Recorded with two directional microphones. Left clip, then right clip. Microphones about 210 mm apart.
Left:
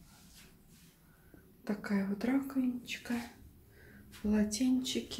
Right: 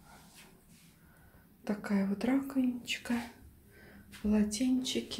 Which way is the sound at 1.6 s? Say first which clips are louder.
Right 2 dB; 5° right (ahead or behind).